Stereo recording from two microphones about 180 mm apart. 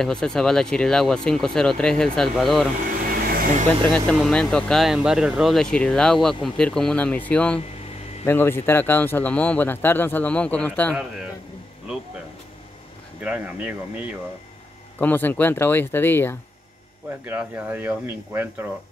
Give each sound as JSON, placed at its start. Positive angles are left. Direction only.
{"t": 0.0, "sound": "speech", "side_deg": 5}
{"t": 3.1, "sound": "vehicle", "side_deg": -55}
{"t": 3.9, "sound": "speech", "side_deg": 5}
{"t": 13.2, "sound": "speech", "side_deg": -10}
{"t": 15.0, "sound": "speech", "side_deg": 10}
{"t": 17.2, "sound": "speech", "side_deg": -10}